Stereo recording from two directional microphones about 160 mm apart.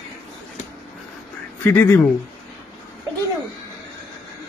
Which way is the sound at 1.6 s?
10° left (ahead or behind).